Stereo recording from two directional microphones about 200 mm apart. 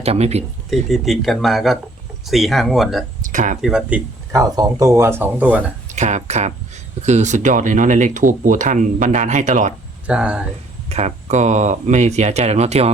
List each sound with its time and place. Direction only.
0.0 s speech: 30° right (ahead or behind)
0.7 s speech: centre (ahead or behind)
3.2 s speech: 40° right (ahead or behind)
3.6 s speech: 5° right (ahead or behind)
5.9 s speech: 35° right (ahead or behind)
10.1 s speech: 5° right (ahead or behind)
10.8 s speech: 35° right (ahead or behind)